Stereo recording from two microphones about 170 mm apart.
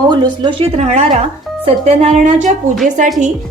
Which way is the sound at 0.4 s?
35° right (ahead or behind).